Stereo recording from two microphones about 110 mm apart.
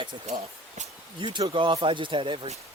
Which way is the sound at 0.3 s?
90° right.